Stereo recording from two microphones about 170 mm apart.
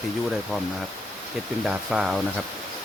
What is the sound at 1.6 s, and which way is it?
Speech, 5° right (ahead or behind).